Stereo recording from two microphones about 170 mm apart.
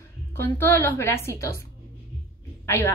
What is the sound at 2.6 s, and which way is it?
Speech, 15° left (ahead or behind).